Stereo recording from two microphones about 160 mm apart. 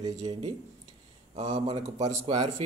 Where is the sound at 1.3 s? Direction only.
40° right (ahead or behind).